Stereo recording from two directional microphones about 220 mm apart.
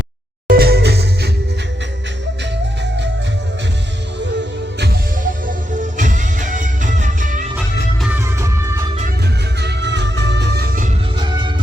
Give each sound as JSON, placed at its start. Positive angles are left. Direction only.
{"t": 0.4, "sound": "music", "side_deg": -45}
{"t": 4.2, "sound": "music", "side_deg": -50}
{"t": 8.0, "sound": "music", "side_deg": -10}
{"t": 9.6, "sound": "music", "side_deg": -50}
{"t": 11.2, "sound": "music", "side_deg": -20}